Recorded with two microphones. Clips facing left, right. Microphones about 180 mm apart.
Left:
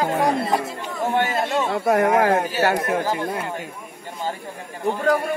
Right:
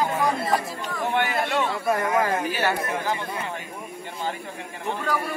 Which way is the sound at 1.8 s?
65° left (ahead or behind).